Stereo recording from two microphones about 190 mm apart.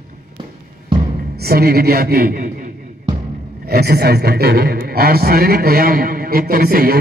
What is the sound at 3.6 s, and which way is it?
Speech, 55° right (ahead or behind).